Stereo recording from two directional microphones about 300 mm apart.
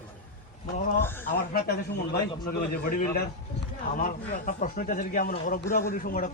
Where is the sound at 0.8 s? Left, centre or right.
Left.